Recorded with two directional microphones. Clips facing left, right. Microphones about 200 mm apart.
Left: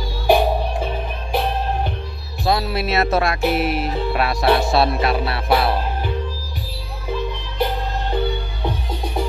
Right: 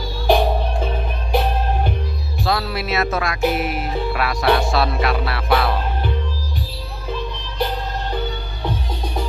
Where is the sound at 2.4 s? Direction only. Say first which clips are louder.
Left 2 dB; 20° left (ahead or behind).